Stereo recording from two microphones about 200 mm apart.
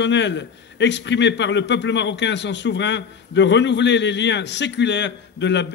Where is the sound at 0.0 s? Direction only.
60° left (ahead or behind).